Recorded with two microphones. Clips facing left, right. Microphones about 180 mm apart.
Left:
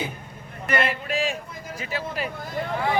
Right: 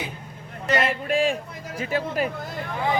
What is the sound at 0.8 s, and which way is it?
A man's voice, 45° right (ahead or behind).